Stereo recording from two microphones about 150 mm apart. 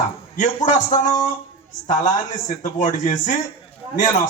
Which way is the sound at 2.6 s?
60° left (ahead or behind).